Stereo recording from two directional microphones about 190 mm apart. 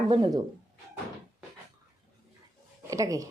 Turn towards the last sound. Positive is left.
turn(degrees=-15)  # may be behind; listen again after turning